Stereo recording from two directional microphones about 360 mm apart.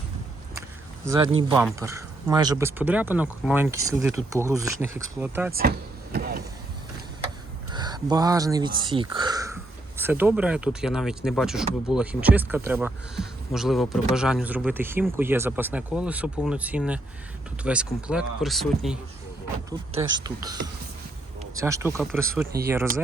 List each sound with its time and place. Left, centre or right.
1.4 s speech: centre
5.5 s vehicle: right
7.7 s speech: centre
19.9 s speech: centre
21.6 s speech: centre